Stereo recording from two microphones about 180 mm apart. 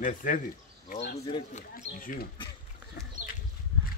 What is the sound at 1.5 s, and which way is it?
Speech, 50° left (ahead or behind).